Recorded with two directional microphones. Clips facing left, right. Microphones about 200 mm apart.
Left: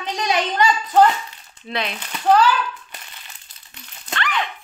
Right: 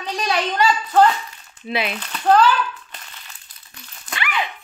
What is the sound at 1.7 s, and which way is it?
Speech, 5° right (ahead or behind).